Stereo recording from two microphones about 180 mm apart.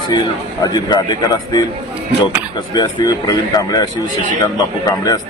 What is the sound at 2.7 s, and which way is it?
Speech, 20° left (ahead or behind).